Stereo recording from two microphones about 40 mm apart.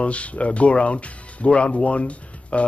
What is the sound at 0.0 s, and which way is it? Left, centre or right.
Speech, left.